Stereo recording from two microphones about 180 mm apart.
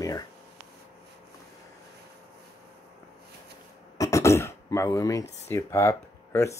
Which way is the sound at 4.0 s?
15° left (ahead or behind).